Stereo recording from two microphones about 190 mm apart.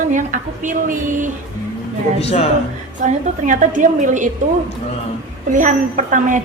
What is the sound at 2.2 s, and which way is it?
Speech, 30° left (ahead or behind).